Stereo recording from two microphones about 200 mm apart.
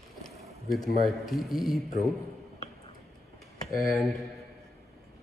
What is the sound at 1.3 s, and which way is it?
Speech, centre (ahead or behind).